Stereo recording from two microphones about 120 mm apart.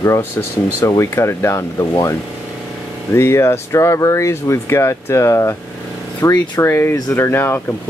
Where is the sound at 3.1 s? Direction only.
20° left (ahead or behind).